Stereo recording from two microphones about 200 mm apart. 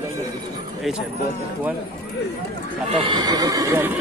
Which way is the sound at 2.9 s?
20° right (ahead or behind).